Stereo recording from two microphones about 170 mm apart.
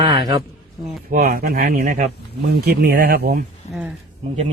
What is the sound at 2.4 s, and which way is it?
A man's voice, 70° right (ahead or behind).